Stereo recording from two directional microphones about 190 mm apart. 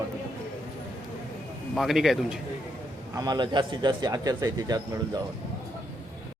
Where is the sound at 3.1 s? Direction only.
20° right (ahead or behind).